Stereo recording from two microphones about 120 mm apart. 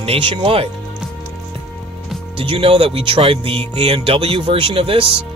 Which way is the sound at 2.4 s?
50° right (ahead or behind).